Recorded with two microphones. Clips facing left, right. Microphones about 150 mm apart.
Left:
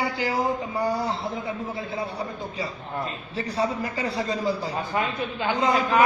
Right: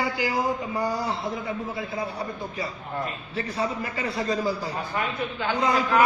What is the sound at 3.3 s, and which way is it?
Speech, 30° left (ahead or behind).